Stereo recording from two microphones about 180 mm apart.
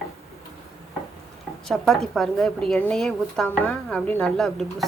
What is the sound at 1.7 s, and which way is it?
A woman's voice, centre (ahead or behind).